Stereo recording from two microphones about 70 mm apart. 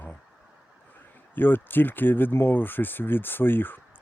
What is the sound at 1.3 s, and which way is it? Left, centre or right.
Speech, left.